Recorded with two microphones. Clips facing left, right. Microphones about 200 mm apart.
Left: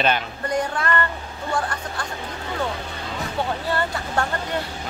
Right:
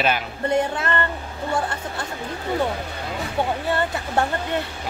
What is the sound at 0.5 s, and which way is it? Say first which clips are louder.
Speech: right 2 dB; 25° right (ahead or behind).